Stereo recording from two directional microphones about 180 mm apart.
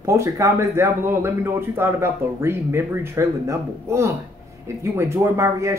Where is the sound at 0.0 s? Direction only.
15° right (ahead or behind).